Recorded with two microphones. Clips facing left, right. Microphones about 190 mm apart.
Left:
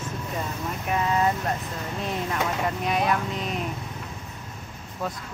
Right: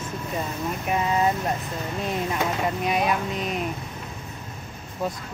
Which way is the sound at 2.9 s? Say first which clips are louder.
Even; 15° right (ahead or behind).